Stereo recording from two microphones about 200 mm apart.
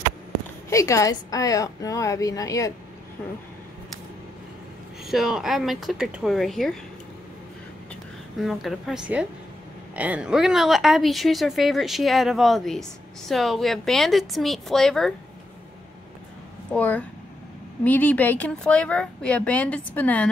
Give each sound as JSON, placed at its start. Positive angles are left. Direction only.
{"t": 0.7, "sound": "a woman's voice", "side_deg": 15}
{"t": 5.0, "sound": "a woman's voice", "side_deg": 0}
{"t": 7.9, "sound": "a woman's voice", "side_deg": 0}
{"t": 16.7, "sound": "a woman's voice", "side_deg": 5}